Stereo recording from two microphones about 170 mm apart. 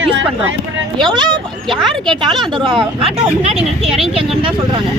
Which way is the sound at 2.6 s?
30° right (ahead or behind).